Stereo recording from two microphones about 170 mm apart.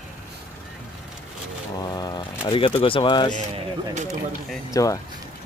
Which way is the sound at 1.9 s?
25° left (ahead or behind).